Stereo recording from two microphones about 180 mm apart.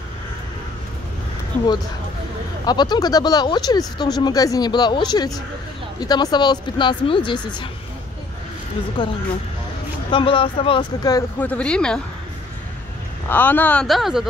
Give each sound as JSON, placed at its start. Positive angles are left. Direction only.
{"t": 2.6, "sound": "speech", "side_deg": 25}
{"t": 9.0, "sound": "speech", "side_deg": 25}
{"t": 11.3, "sound": "speech", "side_deg": 10}
{"t": 13.3, "sound": "speech", "side_deg": 10}